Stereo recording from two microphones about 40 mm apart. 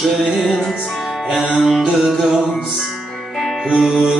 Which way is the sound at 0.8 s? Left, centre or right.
Centre.